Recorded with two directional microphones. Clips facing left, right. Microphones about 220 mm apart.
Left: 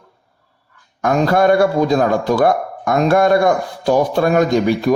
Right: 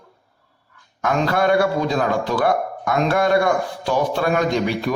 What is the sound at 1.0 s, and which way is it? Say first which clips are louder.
Speech: left 5 dB; 45° left (ahead or behind).